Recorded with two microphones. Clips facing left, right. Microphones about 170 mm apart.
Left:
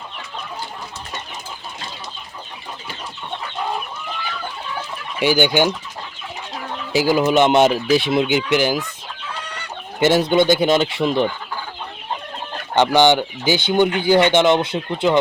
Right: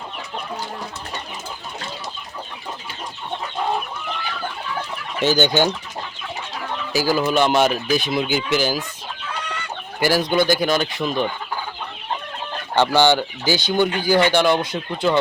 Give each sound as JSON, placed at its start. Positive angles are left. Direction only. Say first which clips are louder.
{"t": 5.2, "sound": "chicken", "louder": "left 1 dB", "side_deg": 15}
{"t": 6.9, "sound": "speech", "louder": "left 4 dB", "side_deg": 20}
{"t": 8.4, "sound": "chicken", "louder": "left 3 dB", "side_deg": 15}
{"t": 10.0, "sound": "speech", "louder": "left 3 dB", "side_deg": 25}
{"t": 12.7, "sound": "speech", "louder": "left 2 dB", "side_deg": 15}